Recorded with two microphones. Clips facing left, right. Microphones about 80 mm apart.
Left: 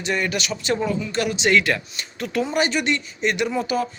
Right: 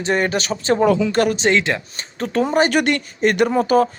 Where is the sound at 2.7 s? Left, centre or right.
Right.